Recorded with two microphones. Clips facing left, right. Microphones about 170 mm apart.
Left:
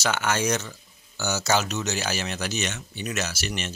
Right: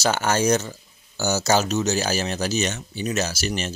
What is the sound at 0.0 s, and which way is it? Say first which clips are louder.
Speech: right 4 dB; 40° right (ahead or behind).